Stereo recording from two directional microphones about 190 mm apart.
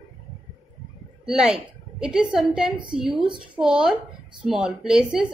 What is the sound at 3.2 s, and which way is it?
Speech, 25° right (ahead or behind).